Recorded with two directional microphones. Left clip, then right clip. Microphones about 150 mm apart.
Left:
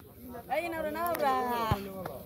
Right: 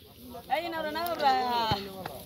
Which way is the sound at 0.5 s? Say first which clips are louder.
Right 2 dB; 30° left (ahead or behind).